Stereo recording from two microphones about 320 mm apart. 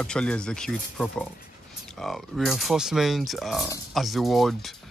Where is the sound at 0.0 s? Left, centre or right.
Centre.